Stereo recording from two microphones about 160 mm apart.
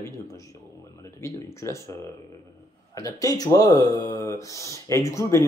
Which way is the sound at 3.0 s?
20° left (ahead or behind).